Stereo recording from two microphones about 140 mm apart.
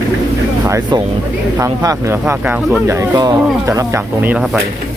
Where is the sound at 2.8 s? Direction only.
25° right (ahead or behind).